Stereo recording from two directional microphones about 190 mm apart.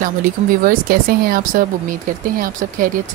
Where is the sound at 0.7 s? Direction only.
50° right (ahead or behind).